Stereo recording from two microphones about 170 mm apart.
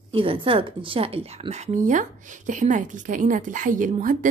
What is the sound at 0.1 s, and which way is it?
A woman's voice, 30° right (ahead or behind).